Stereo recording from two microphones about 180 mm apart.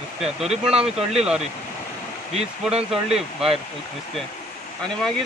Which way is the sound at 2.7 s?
35° right (ahead or behind).